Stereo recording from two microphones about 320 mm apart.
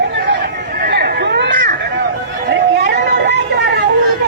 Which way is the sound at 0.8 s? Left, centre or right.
Right.